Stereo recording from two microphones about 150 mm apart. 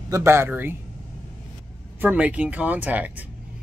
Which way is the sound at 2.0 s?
10° right (ahead or behind).